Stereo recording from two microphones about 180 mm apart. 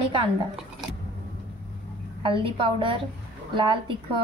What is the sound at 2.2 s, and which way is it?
A woman's voice, 30° right (ahead or behind).